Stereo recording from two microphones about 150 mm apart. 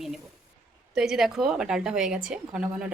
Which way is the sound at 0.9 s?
5° right (ahead or behind).